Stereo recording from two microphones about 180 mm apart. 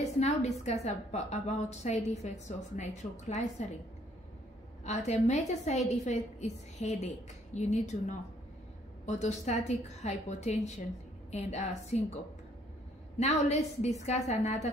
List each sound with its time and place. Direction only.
0.2 s a woman's voice: 40° left (ahead or behind)
4.8 s a woman's voice: 40° left (ahead or behind)
13.2 s a woman's voice: 40° left (ahead or behind)